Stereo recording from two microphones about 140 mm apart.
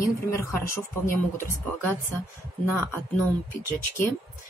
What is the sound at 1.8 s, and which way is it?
Speech, 20° right (ahead or behind).